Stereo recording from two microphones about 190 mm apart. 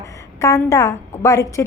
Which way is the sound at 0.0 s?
15° left (ahead or behind).